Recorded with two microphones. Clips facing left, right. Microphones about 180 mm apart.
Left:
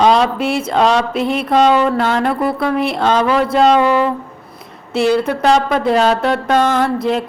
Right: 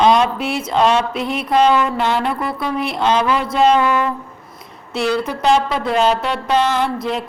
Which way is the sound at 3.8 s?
30° left (ahead or behind).